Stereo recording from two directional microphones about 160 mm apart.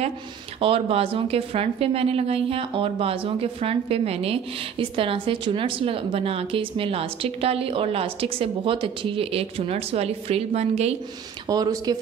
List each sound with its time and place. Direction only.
0.6 s a woman's voice: 35° right (ahead or behind)
11.4 s speech: 25° right (ahead or behind)